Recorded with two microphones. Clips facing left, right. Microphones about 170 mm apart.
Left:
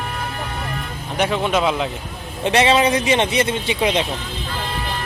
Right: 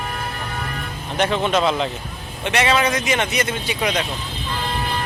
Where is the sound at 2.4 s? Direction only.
30° left (ahead or behind).